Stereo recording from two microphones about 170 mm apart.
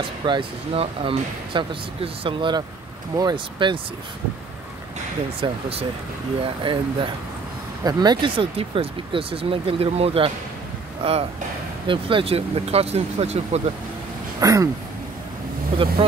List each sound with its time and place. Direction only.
0.2 s speech: 30° right (ahead or behind)
5.4 s speech: 35° right (ahead or behind)
14.4 s speech: 20° right (ahead or behind)